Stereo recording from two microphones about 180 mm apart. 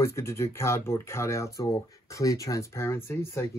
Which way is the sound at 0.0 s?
15° left (ahead or behind).